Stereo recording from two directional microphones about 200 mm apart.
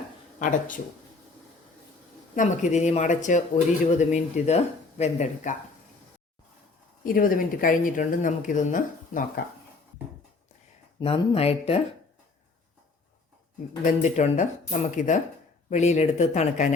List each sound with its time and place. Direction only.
0.3 s speech: 40° left (ahead or behind)
2.3 s speech: 40° left (ahead or behind)
7.0 s speech: 45° left (ahead or behind)
11.0 s speech: 30° left (ahead or behind)
13.8 s speech: 35° left (ahead or behind)